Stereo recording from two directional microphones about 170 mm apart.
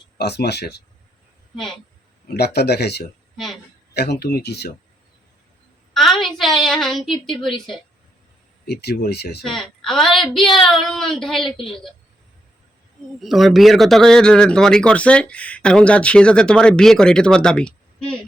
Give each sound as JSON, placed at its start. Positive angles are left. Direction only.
{"t": 0.2, "sound": "speech", "side_deg": 75}
{"t": 1.5, "sound": "a man's voice", "side_deg": 0}
{"t": 2.2, "sound": "speech", "side_deg": 70}
{"t": 3.3, "sound": "a sound", "side_deg": 0}
{"t": 3.9, "sound": "speech", "side_deg": 70}
{"t": 5.9, "sound": "a woman's voice", "side_deg": 0}
{"t": 8.6, "sound": "speech", "side_deg": 70}
{"t": 9.6, "sound": "a man's voice", "side_deg": 0}
{"t": 13.2, "sound": "a man's voice", "side_deg": 0}